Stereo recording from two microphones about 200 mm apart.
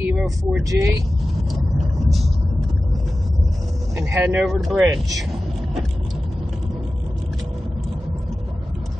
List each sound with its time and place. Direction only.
0.0 s speech: 10° right (ahead or behind)
4.1 s speech: 10° right (ahead or behind)